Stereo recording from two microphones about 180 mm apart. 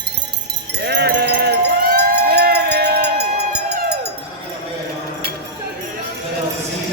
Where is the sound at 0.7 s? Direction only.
65° right (ahead or behind).